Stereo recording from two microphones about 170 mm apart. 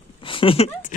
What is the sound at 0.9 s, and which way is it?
Speech, 50° left (ahead or behind).